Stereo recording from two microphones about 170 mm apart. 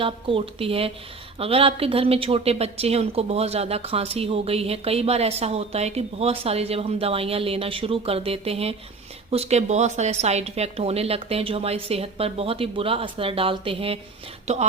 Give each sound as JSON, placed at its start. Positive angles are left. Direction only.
{"t": 0.0, "sound": "a woman's voice", "side_deg": -30}